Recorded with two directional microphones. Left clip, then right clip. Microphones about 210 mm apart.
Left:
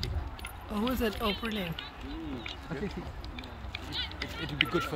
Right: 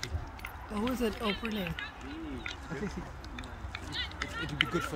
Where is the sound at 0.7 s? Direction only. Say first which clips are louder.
Left 2 dB; centre (ahead or behind).